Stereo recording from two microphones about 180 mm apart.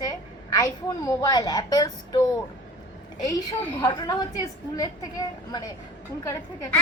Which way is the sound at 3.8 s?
20° left (ahead or behind).